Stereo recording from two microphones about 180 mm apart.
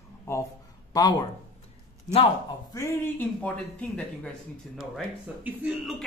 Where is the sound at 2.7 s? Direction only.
15° left (ahead or behind).